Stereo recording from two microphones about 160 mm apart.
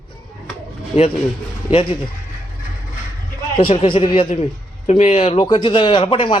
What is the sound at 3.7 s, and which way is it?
Speech, 30° left (ahead or behind).